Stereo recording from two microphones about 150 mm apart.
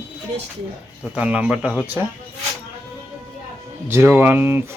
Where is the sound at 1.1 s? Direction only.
10° right (ahead or behind).